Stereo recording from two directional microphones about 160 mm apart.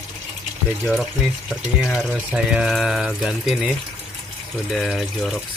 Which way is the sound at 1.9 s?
5° right (ahead or behind).